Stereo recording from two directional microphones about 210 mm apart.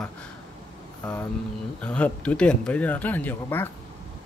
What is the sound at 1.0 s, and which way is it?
Speech, 5° left (ahead or behind).